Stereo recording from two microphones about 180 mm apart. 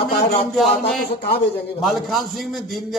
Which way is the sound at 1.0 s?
60° left (ahead or behind).